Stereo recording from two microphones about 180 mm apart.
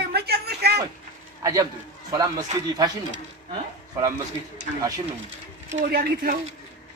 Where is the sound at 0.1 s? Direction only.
65° right (ahead or behind).